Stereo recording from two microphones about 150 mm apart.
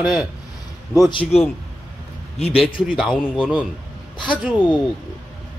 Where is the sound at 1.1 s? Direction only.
40° left (ahead or behind).